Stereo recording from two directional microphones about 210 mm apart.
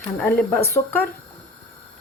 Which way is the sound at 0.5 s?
10° left (ahead or behind).